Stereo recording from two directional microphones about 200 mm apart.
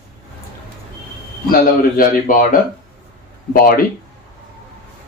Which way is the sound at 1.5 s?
45° left (ahead or behind).